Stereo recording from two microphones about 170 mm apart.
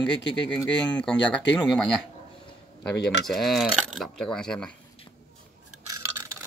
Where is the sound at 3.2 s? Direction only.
Centre (ahead or behind).